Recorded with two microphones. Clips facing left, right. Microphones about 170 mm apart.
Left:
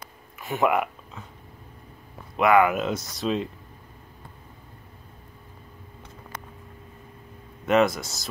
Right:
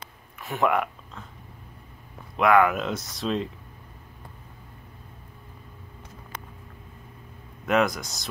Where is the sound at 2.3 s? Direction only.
Centre (ahead or behind).